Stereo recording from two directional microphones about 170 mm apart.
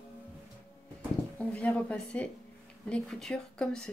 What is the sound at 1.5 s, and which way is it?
Speech, 10° left (ahead or behind).